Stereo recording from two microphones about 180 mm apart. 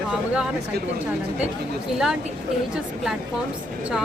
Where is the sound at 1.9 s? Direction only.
Centre (ahead or behind).